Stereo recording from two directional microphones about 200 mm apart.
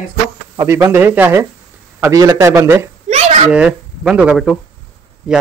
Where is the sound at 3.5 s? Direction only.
5° right (ahead or behind).